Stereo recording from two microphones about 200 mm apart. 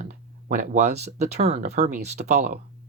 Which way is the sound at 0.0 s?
35° right (ahead or behind).